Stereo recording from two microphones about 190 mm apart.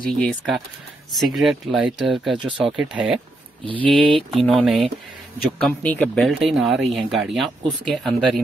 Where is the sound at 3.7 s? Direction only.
25° right (ahead or behind).